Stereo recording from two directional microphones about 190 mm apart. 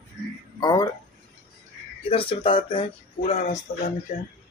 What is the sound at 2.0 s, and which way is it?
Speech, 30° left (ahead or behind).